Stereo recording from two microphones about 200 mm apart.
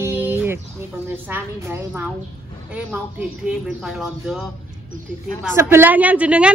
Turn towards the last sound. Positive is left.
turn(degrees=-5)  # may be behind; listen again after turning